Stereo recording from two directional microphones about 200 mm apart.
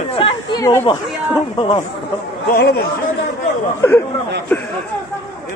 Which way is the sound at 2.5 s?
50° left (ahead or behind).